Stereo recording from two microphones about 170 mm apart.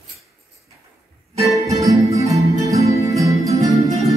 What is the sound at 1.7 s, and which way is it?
Music, 20° right (ahead or behind).